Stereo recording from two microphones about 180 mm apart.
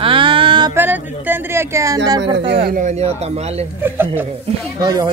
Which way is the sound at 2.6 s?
45° right (ahead or behind).